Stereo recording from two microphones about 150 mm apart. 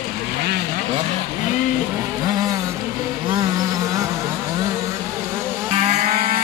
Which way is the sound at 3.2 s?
30° right (ahead or behind).